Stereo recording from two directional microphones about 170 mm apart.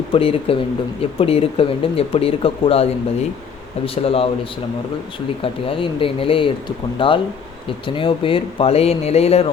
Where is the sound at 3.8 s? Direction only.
35° left (ahead or behind).